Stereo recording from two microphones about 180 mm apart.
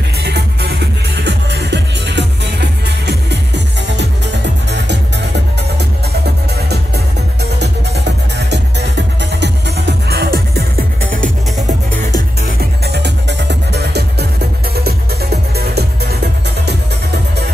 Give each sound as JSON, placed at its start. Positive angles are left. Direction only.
{"t": 0.2, "sound": "music", "side_deg": -65}
{"t": 7.5, "sound": "music", "side_deg": -70}
{"t": 12.4, "sound": "music", "side_deg": -65}